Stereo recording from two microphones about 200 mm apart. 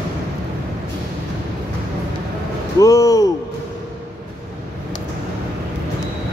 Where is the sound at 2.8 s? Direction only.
15° left (ahead or behind).